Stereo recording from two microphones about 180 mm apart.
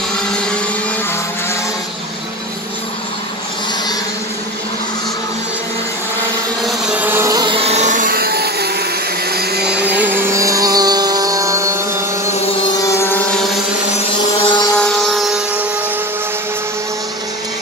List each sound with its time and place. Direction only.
6.6 s music: 5° right (ahead or behind); by 8.8 s 60° right (ahead or behind)
9.3 s blender: 60° right (ahead or behind)
9.7 s music: 10° right (ahead or behind)
12.3 s vehicle: 35° left (ahead or behind)
12.7 s vehicle: 15° left (ahead or behind)
14.4 s vehicle: 25° left (ahead or behind)
14.8 s a sound: 5° left (ahead or behind)